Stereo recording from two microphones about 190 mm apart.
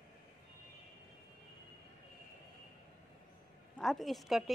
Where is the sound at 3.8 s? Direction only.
Centre (ahead or behind).